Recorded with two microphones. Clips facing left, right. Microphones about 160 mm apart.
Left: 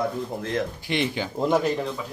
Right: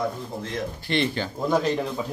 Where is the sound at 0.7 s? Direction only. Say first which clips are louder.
Right 1 dB; 10° left (ahead or behind).